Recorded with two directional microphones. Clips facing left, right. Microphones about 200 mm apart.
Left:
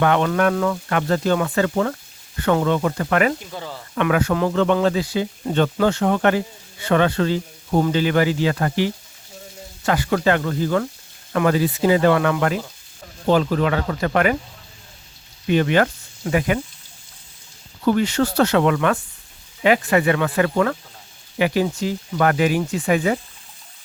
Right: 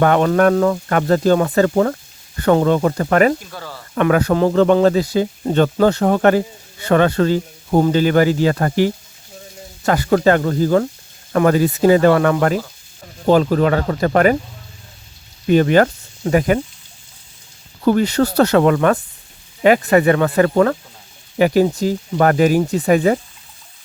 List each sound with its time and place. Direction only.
0.0 s speech: 40° right (ahead or behind)
3.4 s speech: 20° left (ahead or behind)
3.9 s speech: 40° right (ahead or behind)
15.4 s speech: 40° right (ahead or behind)
17.8 s speech: 40° right (ahead or behind)